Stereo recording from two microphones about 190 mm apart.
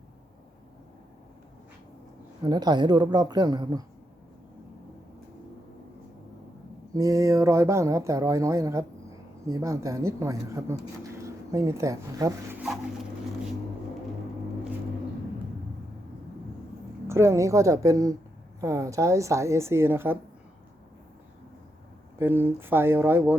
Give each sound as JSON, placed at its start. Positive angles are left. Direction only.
{"t": 2.4, "sound": "a woman's voice", "side_deg": -20}
{"t": 6.9, "sound": "speech", "side_deg": -20}
{"t": 17.1, "sound": "speech", "side_deg": -15}
{"t": 22.2, "sound": "speech", "side_deg": -10}